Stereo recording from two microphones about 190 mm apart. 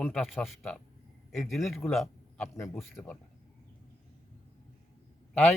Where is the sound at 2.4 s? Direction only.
15° left (ahead or behind).